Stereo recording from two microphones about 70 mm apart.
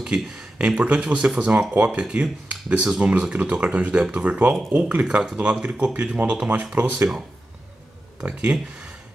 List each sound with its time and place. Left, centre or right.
0.0 s speech: centre
8.2 s speech: centre